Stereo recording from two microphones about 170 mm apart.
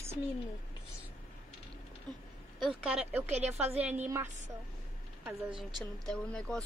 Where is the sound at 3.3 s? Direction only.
40° right (ahead or behind).